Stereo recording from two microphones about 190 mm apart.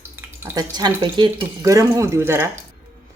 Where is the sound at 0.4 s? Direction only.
20° right (ahead or behind).